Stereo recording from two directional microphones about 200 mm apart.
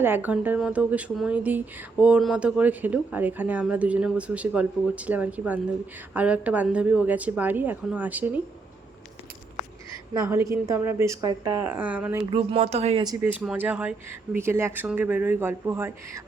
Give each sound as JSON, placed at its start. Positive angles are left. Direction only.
{"t": 0.0, "sound": "speech", "side_deg": -10}
{"t": 10.2, "sound": "speech", "side_deg": -15}
{"t": 12.1, "sound": "speech", "side_deg": -25}
{"t": 13.4, "sound": "speech", "side_deg": -5}